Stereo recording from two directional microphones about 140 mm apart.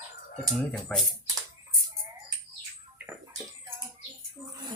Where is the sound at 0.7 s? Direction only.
5° left (ahead or behind).